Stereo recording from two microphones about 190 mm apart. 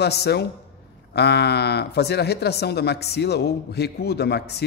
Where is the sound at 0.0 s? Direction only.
60° left (ahead or behind).